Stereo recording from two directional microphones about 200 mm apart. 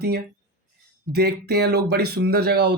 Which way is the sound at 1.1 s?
55° right (ahead or behind).